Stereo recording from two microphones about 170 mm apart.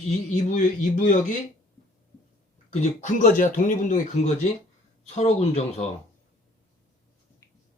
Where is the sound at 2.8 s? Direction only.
50° left (ahead or behind).